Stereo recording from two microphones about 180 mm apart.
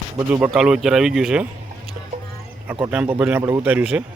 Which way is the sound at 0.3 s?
5° right (ahead or behind).